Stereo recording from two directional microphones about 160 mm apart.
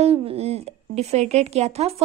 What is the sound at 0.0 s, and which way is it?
A woman's voice, 35° right (ahead or behind).